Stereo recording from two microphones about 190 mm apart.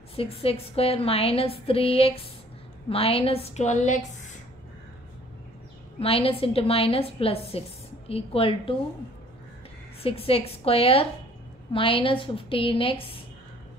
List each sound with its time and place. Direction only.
0.1 s a woman's voice: 30° left (ahead or behind)
5.9 s a woman's voice: 30° left (ahead or behind)
10.0 s a woman's voice: 30° left (ahead or behind)